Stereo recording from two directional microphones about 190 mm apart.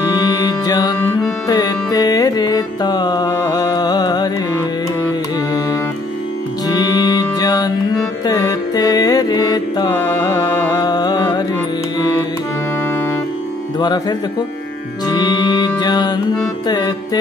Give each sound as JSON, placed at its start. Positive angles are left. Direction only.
{"t": 0.1, "sound": "music", "side_deg": 20}
{"t": 13.7, "sound": "music", "side_deg": 25}